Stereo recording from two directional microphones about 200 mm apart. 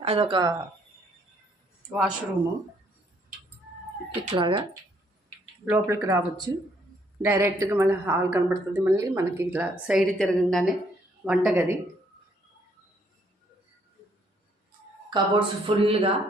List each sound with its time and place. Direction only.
0.0 s speech: 30° right (ahead or behind)
1.9 s a woman's voice: 5° right (ahead or behind)
4.1 s speech: 25° right (ahead or behind)
5.6 s a woman's voice: 10° right (ahead or behind)
15.1 s speech: 25° right (ahead or behind)